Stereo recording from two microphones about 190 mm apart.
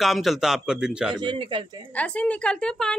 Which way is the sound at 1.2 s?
25° right (ahead or behind).